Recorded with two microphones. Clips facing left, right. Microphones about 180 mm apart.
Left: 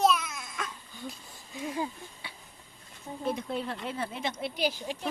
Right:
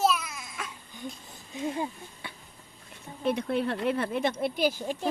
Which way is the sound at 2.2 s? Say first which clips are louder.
Right 6 dB; 50° right (ahead or behind).